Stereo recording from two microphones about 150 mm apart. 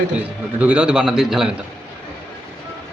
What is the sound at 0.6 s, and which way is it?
Speech, 10° right (ahead or behind).